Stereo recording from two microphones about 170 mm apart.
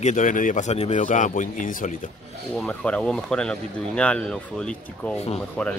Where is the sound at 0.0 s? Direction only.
50° left (ahead or behind).